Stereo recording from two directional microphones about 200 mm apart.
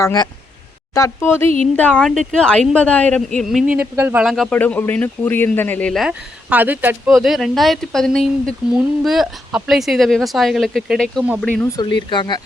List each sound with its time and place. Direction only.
0.0 s speech: 20° left (ahead or behind); by 3.6 s centre (ahead or behind)
3.7 s speech: 10° right (ahead or behind)
11.8 s speech: 25° left (ahead or behind)